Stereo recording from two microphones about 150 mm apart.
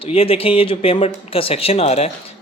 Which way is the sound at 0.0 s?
40° left (ahead or behind).